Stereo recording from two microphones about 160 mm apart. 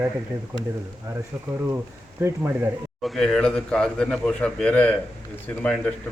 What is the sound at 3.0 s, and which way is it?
A man's voice, centre (ahead or behind).